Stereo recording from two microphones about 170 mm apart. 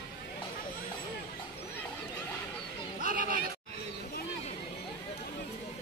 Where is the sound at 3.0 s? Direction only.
55° right (ahead or behind).